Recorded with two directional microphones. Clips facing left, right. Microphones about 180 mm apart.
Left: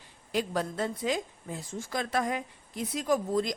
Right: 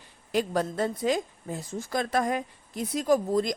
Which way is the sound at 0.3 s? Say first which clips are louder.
Right 4 dB; 45° right (ahead or behind).